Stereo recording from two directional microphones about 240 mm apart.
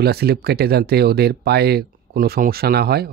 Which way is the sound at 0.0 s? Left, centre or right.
Right.